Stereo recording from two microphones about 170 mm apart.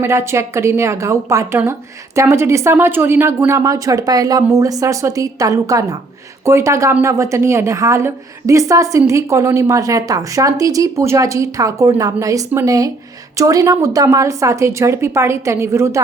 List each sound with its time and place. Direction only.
0.0 s a woman's voice: 15° right (ahead or behind)